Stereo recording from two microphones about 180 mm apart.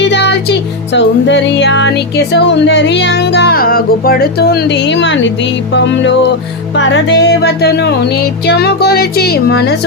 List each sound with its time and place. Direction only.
0.0 s music: 75° left (ahead or behind)
0.9 s speech: 85° left
5.7 s music: 80° left; by 9.7 s 60° left (ahead or behind)